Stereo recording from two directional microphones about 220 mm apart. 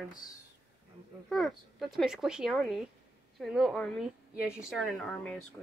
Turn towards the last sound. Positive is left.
turn(degrees=5)  # may be behind; listen again after turning